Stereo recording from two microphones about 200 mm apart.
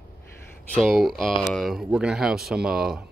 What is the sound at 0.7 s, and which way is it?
Speech, centre (ahead or behind).